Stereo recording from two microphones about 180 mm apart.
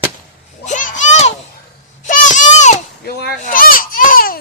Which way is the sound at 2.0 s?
45° left (ahead or behind).